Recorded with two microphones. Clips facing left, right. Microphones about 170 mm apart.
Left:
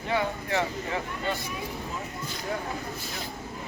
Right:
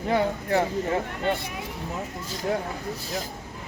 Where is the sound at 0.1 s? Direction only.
45° right (ahead or behind).